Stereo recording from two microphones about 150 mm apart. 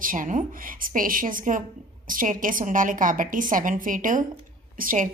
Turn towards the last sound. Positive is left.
turn(degrees=-60)  # may be behind; listen again after turning